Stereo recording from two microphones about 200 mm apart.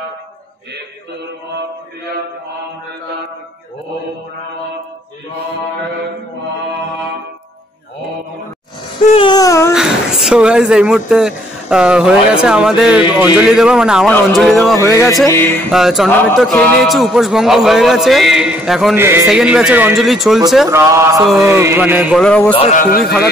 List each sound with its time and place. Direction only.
9.1 s a sound: 25° left (ahead or behind)
9.8 s speech: 5° right (ahead or behind)
14.8 s music: 15° left (ahead or behind)
15.7 s speech: centre (ahead or behind)
20.6 s speech: 15° right (ahead or behind)
22.2 s speech: 5° left (ahead or behind)
22.5 s a man's voice: 30° left (ahead or behind)
22.8 s a man's voice: 45° left (ahead or behind)